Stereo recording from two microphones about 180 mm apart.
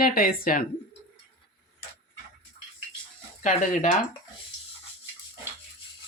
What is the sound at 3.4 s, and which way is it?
Speech, 45° left (ahead or behind).